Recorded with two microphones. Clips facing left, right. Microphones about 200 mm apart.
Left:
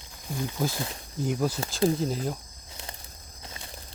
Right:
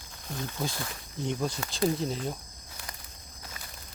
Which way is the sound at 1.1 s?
5° left (ahead or behind).